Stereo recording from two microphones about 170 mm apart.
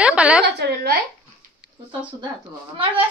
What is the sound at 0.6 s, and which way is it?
Speech, 70° right (ahead or behind).